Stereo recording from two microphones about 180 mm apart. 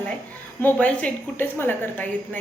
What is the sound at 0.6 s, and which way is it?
A woman's voice, 10° left (ahead or behind).